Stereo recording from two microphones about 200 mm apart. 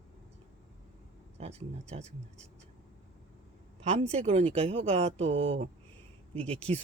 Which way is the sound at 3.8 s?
30° right (ahead or behind).